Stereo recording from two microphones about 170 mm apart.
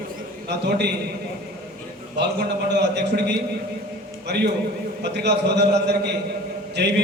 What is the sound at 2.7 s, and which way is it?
Speech, 85° right.